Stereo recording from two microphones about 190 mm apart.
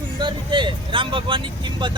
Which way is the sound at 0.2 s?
25° right (ahead or behind).